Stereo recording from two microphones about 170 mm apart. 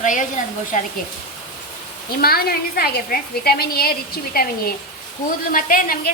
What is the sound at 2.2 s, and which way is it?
A woman's voice, 60° left (ahead or behind).